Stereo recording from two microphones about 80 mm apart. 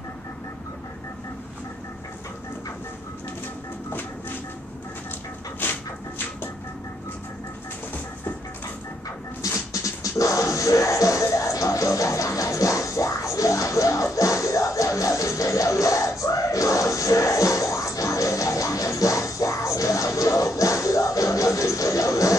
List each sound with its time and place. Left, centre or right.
5.6 s dog: left
9.4 s music: left